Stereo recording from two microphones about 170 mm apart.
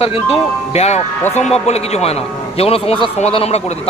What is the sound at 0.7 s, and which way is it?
Speech, 40° left (ahead or behind).